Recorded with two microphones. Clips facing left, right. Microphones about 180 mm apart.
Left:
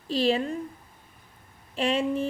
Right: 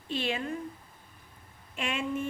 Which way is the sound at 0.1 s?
35° left (ahead or behind).